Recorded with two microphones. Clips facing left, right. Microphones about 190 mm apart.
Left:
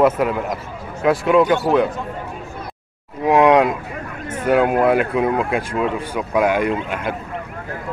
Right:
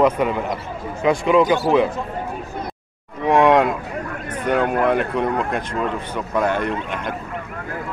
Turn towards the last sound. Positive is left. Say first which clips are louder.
# left 3 dB
turn(degrees=10)  # may be behind; listen again after turning